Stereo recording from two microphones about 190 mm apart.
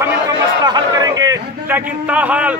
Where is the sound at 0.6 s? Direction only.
20° right (ahead or behind).